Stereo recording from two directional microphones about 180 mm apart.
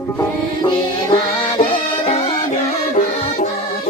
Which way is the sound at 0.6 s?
25° left (ahead or behind).